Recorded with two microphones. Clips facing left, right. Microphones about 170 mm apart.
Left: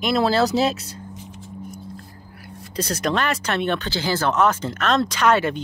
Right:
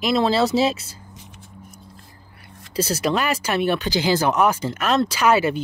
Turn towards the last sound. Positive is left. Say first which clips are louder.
# right 1 dB
turn(degrees=-5)  # may be behind; listen again after turning